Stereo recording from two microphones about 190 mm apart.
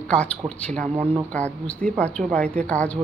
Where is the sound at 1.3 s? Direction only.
5° left (ahead or behind).